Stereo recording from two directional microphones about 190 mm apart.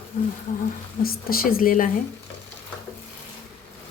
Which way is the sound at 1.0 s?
50° left (ahead or behind).